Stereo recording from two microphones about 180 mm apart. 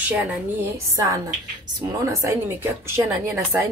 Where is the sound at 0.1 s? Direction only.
15° right (ahead or behind).